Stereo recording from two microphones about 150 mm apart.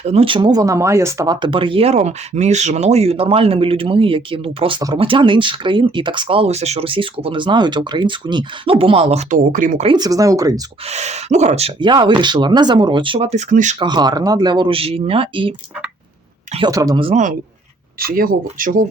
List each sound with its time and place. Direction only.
0.0 s speech: 45° right (ahead or behind)
9.5 s speech: 60° right (ahead or behind)
9.8 s speech: 30° right (ahead or behind)
10.8 s speech: 50° right (ahead or behind)
11.8 s speech: 30° right (ahead or behind); by 13.7 s 55° right (ahead or behind)
13.7 s speech: 30° right (ahead or behind)
16.6 s speech: 25° right (ahead or behind)
18.0 s speech: 75° right (ahead or behind)